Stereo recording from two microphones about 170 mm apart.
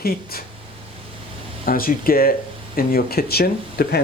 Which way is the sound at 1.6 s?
55° left (ahead or behind).